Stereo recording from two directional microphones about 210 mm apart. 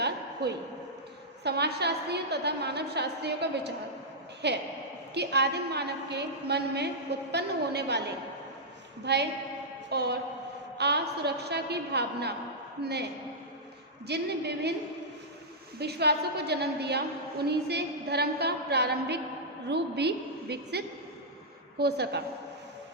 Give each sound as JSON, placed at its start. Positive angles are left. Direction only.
{"t": 0.4, "sound": "a woman's voice", "side_deg": -50}
{"t": 9.1, "sound": "a woman's voice", "side_deg": -50}
{"t": 14.1, "sound": "a woman's voice", "side_deg": -50}
{"t": 15.8, "sound": "a woman's voice", "side_deg": -50}